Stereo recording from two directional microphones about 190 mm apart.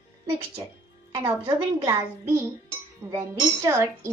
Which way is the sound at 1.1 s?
20° right (ahead or behind).